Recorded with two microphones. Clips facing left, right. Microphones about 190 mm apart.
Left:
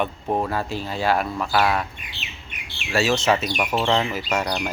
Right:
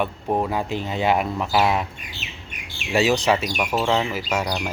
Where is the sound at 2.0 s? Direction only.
45° right (ahead or behind).